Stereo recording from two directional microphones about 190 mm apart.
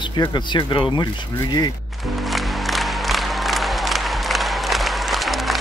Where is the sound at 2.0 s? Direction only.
Centre (ahead or behind).